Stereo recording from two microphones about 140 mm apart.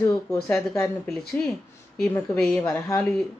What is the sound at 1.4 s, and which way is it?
Speech, 10° left (ahead or behind).